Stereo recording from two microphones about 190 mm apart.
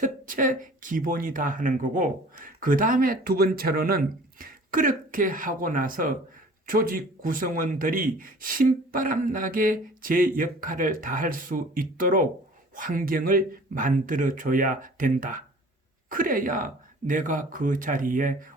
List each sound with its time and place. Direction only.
0.0 s speech: 45° right (ahead or behind)